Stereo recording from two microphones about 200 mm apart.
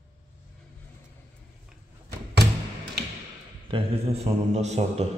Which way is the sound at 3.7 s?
30° right (ahead or behind).